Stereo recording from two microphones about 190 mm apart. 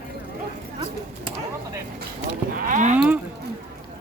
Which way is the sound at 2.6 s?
45° right (ahead or behind).